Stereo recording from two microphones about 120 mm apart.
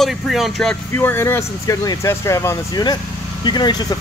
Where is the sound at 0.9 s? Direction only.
15° left (ahead or behind).